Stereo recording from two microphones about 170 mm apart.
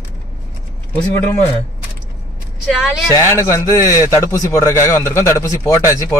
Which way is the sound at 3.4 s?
15° left (ahead or behind).